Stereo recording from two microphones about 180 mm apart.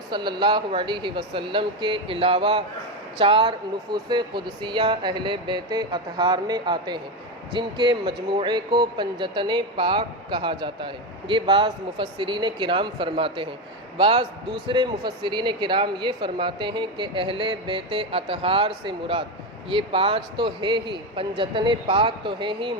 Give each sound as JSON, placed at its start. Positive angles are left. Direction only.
{"t": 0.1, "sound": "speech", "side_deg": -25}